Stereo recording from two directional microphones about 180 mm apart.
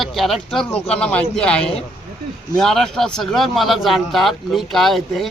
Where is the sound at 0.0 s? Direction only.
Centre (ahead or behind).